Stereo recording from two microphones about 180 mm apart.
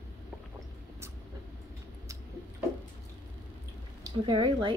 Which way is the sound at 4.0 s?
25° right (ahead or behind).